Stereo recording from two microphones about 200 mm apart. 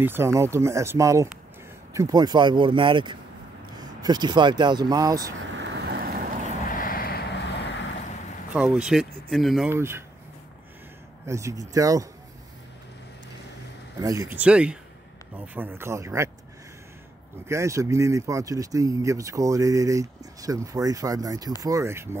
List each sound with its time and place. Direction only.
0.0 s speech: 10° right (ahead or behind)
5.6 s vehicle: 55° right (ahead or behind)
6.7 s vehicle: 45° left (ahead or behind)
8.5 s speech: 5° right (ahead or behind)
9.7 s speech: 10° right (ahead or behind)
11.2 s speech: 15° right (ahead or behind)
13.9 s speech: 15° right (ahead or behind)
17.5 s speech: 15° right (ahead or behind)